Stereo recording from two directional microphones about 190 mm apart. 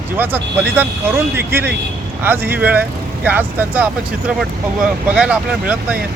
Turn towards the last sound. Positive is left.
turn(degrees=-5)  # may be behind; listen again after turning